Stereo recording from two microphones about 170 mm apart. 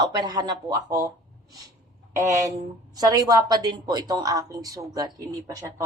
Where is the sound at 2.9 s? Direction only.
20° right (ahead or behind).